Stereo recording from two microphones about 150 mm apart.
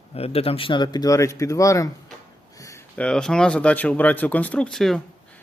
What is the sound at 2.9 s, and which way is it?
Speech, 5° left (ahead or behind).